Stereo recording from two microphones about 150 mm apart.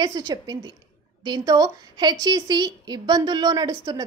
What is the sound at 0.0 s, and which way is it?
A woman's voice, 25° right (ahead or behind).